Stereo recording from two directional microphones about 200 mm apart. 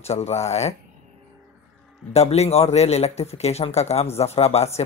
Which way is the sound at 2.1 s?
30° left (ahead or behind).